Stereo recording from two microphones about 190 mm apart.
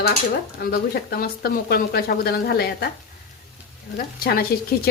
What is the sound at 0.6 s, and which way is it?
A woman's voice, 50° left (ahead or behind).